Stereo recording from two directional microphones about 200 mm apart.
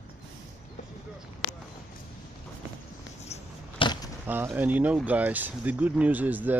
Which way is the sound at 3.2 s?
35° left (ahead or behind).